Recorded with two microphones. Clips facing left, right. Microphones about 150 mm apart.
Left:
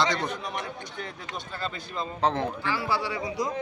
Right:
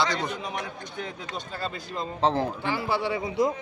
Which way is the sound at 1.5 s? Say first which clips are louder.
Even; 40° right (ahead or behind).